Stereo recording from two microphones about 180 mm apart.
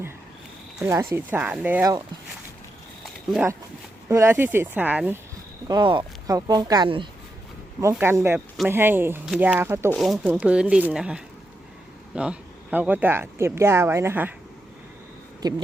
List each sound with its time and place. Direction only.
0.9 s speech: 15° right (ahead or behind)
4.1 s speech: 15° right (ahead or behind)
5.6 s speech: 25° right (ahead or behind)
7.8 s speech: 15° right (ahead or behind)
9.9 s speech: centre (ahead or behind)
15.4 s speech: 20° right (ahead or behind)